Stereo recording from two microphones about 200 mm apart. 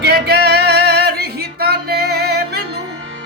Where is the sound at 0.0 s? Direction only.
55° right (ahead or behind).